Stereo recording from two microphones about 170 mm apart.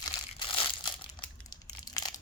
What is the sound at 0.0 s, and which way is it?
Crumpling, 30° left (ahead or behind).